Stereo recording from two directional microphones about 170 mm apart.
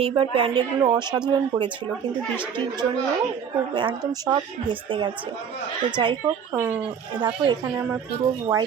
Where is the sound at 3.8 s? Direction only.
25° right (ahead or behind).